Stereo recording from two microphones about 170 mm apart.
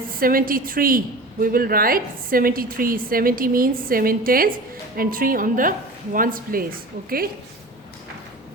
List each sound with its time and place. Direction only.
0.1 s a woman's voice: 55° right (ahead or behind)